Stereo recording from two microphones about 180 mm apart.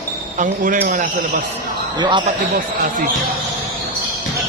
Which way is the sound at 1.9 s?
25° right (ahead or behind).